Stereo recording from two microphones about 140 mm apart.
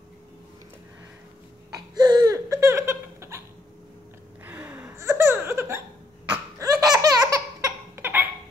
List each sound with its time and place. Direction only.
2.0 s laughter: 30° right (ahead or behind)
4.5 s a sound: 10° right (ahead or behind)
6.6 s laughter: 25° right (ahead or behind)